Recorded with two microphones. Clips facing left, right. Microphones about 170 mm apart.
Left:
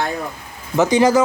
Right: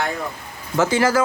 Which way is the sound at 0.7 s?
20° left (ahead or behind).